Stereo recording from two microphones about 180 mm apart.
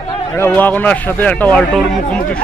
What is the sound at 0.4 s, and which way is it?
Speech, 10° left (ahead or behind).